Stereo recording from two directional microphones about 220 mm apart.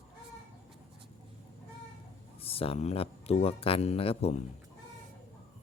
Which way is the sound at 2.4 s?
25° left (ahead or behind).